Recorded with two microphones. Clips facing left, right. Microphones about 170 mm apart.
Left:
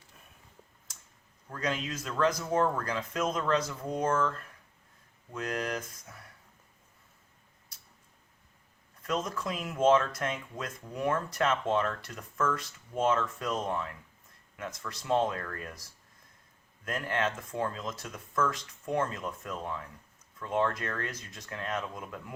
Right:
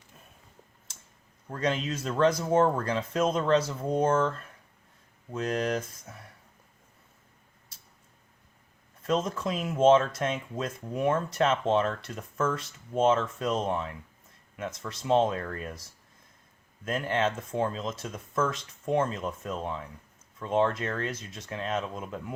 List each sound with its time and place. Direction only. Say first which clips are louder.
1.5 s speech: right 4 dB; 30° right (ahead or behind)
9.0 s speech: right 5 dB; 25° right (ahead or behind)
16.8 s speech: right 4 dB; 25° right (ahead or behind)